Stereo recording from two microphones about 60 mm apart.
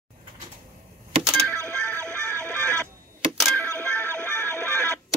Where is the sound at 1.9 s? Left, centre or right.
Centre.